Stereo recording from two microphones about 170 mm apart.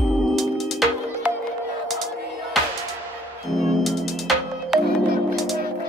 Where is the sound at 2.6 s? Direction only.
Centre (ahead or behind).